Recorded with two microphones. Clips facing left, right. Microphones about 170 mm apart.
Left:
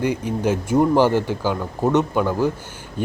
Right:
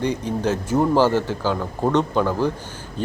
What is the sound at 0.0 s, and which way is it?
Speech, 10° left (ahead or behind).